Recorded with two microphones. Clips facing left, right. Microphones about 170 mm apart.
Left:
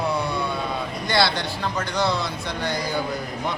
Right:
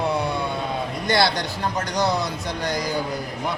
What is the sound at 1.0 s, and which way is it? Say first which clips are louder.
Speech: right 1 dB; 45° right (ahead or behind).